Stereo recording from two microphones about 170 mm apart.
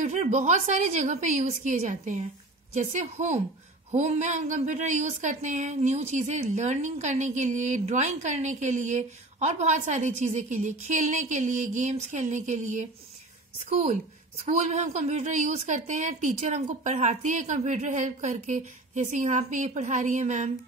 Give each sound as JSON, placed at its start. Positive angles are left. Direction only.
{"t": 0.0, "sound": "a woman's voice", "side_deg": -45}
{"t": 14.7, "sound": "a woman's voice", "side_deg": -45}